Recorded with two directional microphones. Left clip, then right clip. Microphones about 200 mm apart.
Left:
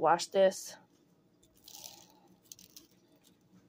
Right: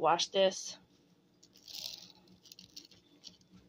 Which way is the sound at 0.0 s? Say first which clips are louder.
Left 2 dB; 25° left (ahead or behind).